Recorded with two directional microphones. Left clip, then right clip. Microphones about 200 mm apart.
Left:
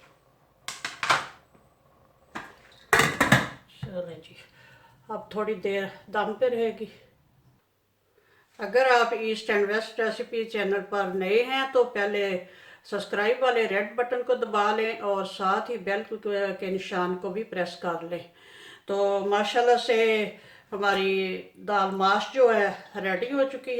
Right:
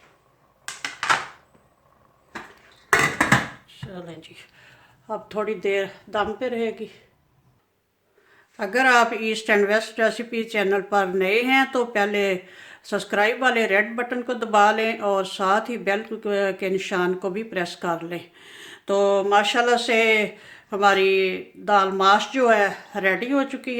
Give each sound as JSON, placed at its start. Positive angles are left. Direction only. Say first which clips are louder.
{"t": 3.9, "sound": "speech", "louder": "left 4 dB", "side_deg": -55}
{"t": 5.0, "sound": "speech", "louder": "right 3 dB", "side_deg": -45}
{"t": 8.5, "sound": "speech", "louder": "right 3 dB", "side_deg": -50}